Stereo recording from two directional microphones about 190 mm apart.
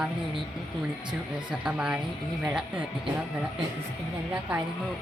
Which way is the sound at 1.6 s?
5° right (ahead or behind).